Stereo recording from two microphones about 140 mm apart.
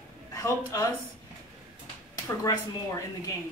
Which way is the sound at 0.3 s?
25° left (ahead or behind).